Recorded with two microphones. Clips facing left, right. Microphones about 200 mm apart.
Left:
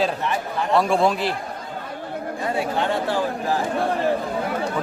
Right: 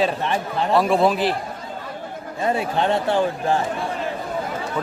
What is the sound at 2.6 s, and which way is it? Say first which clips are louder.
Speech: left 1 dB; 25° right (ahead or behind).